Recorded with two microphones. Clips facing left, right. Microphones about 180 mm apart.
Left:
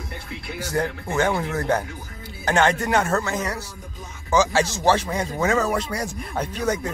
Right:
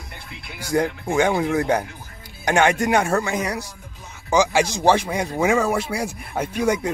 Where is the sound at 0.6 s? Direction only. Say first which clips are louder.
Right 4 dB; 15° right (ahead or behind).